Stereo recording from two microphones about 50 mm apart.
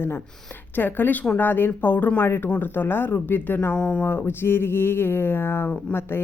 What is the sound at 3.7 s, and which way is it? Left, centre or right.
Speech, left.